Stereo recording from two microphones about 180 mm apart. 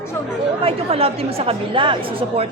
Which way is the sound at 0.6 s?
35° right (ahead or behind).